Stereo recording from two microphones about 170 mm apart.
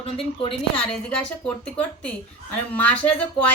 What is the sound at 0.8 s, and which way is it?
Speech, 5° left (ahead or behind).